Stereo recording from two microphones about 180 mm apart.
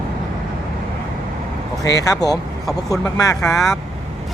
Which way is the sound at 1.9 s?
20° left (ahead or behind).